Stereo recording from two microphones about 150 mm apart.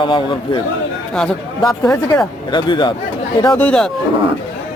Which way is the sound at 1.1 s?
5° left (ahead or behind).